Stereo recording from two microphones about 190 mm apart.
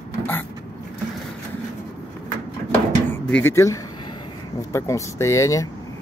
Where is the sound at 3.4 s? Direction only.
15° left (ahead or behind).